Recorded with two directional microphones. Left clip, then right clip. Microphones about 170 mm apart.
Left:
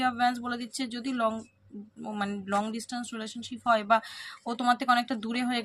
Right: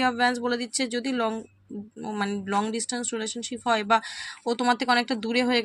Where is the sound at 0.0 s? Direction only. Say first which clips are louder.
Right 4 dB; 15° right (ahead or behind).